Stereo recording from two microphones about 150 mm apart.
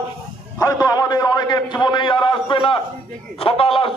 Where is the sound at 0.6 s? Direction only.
25° left (ahead or behind).